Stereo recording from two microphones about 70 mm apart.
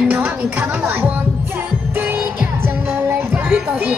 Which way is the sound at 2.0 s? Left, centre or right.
Right.